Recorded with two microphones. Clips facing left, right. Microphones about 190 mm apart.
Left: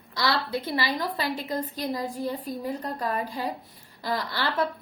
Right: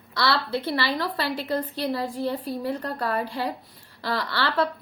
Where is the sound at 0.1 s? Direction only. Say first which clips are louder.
Right 2 dB; 15° left (ahead or behind).